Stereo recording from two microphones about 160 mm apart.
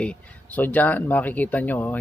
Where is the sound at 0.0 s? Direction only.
10° left (ahead or behind).